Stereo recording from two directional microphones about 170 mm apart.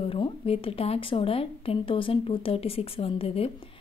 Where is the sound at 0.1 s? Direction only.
30° left (ahead or behind).